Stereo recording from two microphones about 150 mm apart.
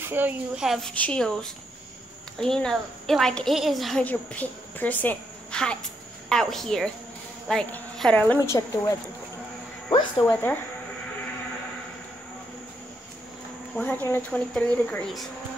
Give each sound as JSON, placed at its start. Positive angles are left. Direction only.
{"t": 0.0, "sound": "speech", "side_deg": -15}
{"t": 0.7, "sound": "a woman's voice", "side_deg": 0}
{"t": 4.0, "sound": "a woman's voice", "side_deg": 10}
{"t": 8.5, "sound": "speech", "side_deg": 20}
{"t": 13.7, "sound": "speech", "side_deg": 10}